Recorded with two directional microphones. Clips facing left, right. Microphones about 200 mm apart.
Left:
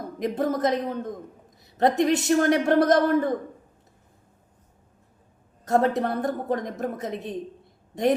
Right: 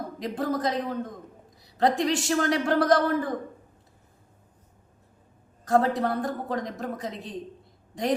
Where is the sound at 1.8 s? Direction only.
20° left (ahead or behind).